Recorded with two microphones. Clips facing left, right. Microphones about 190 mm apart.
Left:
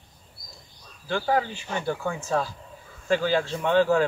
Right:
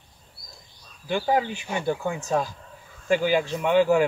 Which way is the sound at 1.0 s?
15° right (ahead or behind).